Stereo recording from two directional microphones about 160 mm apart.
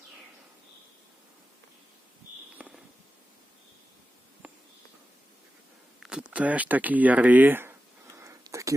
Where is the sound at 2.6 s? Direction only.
5° right (ahead or behind).